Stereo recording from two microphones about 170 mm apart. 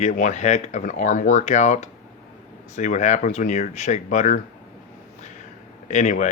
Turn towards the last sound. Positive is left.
turn(degrees=45)  # may be behind; listen again after turning